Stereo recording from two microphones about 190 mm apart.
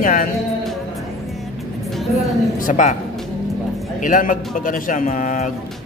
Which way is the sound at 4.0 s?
45° left (ahead or behind).